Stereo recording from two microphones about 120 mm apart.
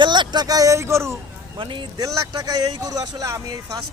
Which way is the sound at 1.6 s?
45° right (ahead or behind).